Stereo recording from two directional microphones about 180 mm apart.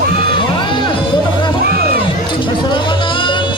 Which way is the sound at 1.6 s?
60° right (ahead or behind).